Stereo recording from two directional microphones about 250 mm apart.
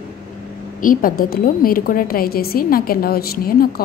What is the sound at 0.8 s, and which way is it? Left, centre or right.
A woman's voice, left.